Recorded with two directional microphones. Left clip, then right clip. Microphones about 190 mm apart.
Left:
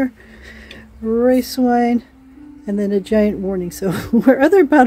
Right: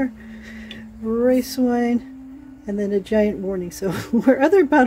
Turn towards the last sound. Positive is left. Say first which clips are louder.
# left 3 dB
turn(degrees=25)  # may be behind; listen again after turning